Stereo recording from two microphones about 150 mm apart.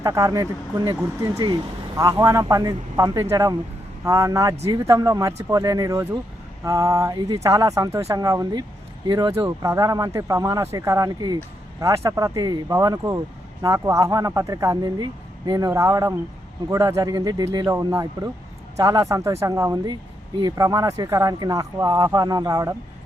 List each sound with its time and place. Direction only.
0.0 s speech: 25° right (ahead or behind)